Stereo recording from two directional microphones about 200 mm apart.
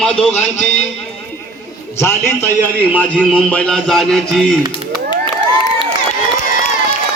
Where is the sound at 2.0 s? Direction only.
15° left (ahead or behind).